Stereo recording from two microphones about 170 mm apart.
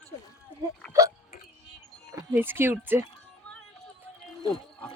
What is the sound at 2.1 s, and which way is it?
Speech, 10° right (ahead or behind).